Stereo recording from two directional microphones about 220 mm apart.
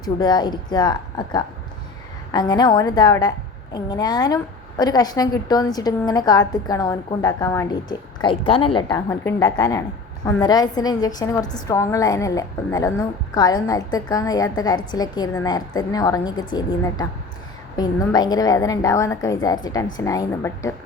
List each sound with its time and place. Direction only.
0.0 s a woman's voice: 20° left (ahead or behind)